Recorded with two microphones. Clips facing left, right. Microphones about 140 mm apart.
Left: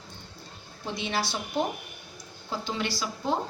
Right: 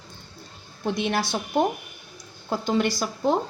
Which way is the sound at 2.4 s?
50° right (ahead or behind).